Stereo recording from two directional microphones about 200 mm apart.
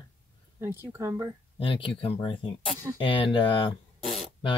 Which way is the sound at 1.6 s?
25° left (ahead or behind).